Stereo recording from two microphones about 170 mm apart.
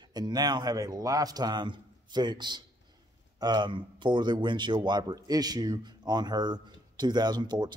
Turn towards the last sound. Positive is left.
turn(degrees=-25)  # may be behind; listen again after turning